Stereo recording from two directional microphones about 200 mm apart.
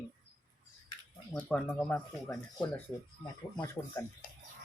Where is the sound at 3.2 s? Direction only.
20° left (ahead or behind).